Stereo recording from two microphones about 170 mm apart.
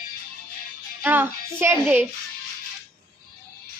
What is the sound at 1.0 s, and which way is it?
Speech, 10° right (ahead or behind).